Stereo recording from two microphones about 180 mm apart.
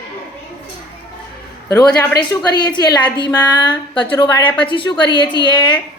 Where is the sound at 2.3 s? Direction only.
25° left (ahead or behind).